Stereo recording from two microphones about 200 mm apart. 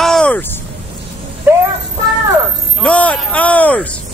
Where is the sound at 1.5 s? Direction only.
10° right (ahead or behind).